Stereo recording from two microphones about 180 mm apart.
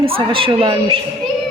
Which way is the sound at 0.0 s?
30° right (ahead or behind).